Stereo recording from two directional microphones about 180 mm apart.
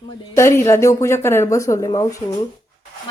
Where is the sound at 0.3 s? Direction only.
15° left (ahead or behind).